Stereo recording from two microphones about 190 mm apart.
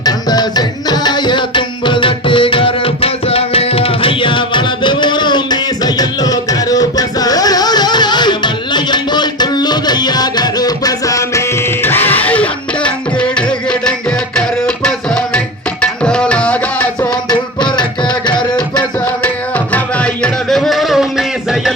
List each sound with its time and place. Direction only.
0.0 s music: 20° left (ahead or behind); by 13.9 s 5° left (ahead or behind)
15.8 s tabla: 5° left (ahead or behind)
17.2 s music: 25° left (ahead or behind)
18.8 s music: 5° left (ahead or behind)